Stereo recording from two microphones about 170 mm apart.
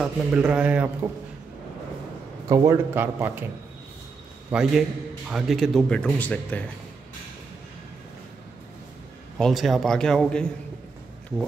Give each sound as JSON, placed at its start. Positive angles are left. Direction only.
{"t": 0.0, "sound": "a man's voice", "side_deg": -5}
{"t": 2.4, "sound": "a man's voice", "side_deg": -20}
{"t": 4.5, "sound": "speech", "side_deg": -5}
{"t": 9.4, "sound": "speech", "side_deg": 0}